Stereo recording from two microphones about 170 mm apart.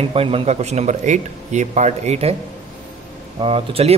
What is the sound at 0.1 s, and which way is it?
A man's voice, 35° right (ahead or behind).